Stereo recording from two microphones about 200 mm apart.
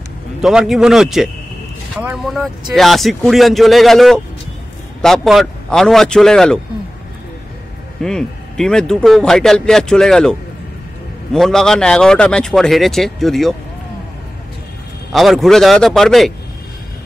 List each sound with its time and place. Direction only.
0.4 s speech: centre (ahead or behind)
8.0 s speech: 5° left (ahead or behind)
11.3 s speech: centre (ahead or behind)
15.1 s speech: centre (ahead or behind)